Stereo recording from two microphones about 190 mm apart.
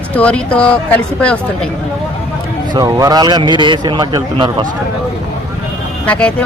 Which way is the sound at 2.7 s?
20° right (ahead or behind).